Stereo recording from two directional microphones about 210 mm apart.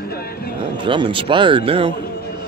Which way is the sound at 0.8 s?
25° right (ahead or behind).